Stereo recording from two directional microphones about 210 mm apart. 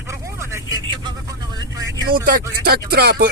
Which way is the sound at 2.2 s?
45° right (ahead or behind).